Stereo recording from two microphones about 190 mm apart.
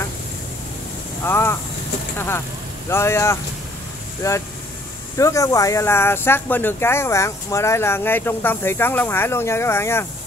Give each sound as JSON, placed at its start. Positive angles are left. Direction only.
{"t": 1.2, "sound": "speech", "side_deg": 10}